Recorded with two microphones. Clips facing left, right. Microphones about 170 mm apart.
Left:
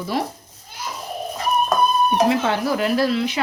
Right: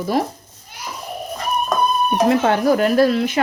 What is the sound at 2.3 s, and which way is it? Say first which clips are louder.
Speech: right 5 dB; 45° right (ahead or behind).